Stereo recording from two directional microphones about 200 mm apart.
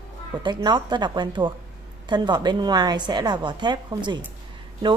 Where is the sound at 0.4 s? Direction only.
20° right (ahead or behind).